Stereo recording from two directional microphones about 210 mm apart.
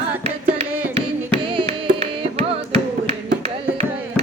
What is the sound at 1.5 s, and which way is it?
Music, 25° right (ahead or behind).